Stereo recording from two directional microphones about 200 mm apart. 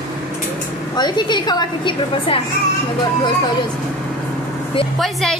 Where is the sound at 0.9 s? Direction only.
20° left (ahead or behind).